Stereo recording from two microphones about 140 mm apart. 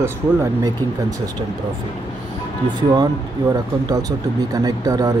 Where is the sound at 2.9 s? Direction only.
30° right (ahead or behind).